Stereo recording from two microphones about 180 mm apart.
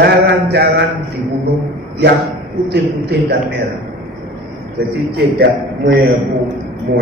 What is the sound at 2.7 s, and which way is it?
Speech, 65° right (ahead or behind).